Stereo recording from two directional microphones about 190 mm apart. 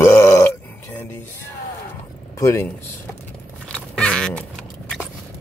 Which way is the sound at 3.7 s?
5° left (ahead or behind).